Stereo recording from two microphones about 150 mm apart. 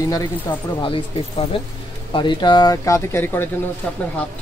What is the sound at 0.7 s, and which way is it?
Speech, 35° left (ahead or behind).